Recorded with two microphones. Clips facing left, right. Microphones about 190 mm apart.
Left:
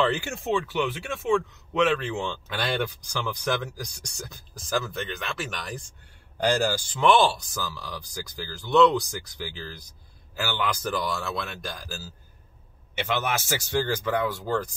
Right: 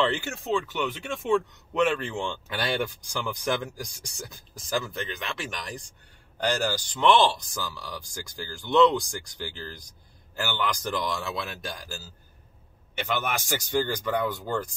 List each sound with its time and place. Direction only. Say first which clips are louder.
0.1 s a man's voice: left 1 dB; 10° left (ahead or behind)